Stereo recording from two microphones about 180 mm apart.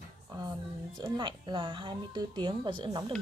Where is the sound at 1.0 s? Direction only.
25° right (ahead or behind).